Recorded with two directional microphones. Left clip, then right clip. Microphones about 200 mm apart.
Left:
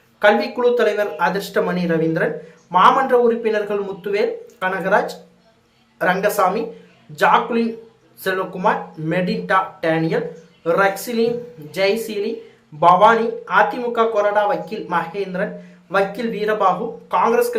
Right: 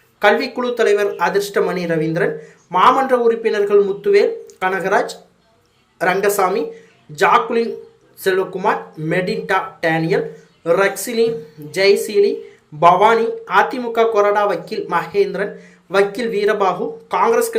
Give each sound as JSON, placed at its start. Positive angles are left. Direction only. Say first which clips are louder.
{"t": 0.2, "sound": "speech", "louder": "even", "side_deg": -10}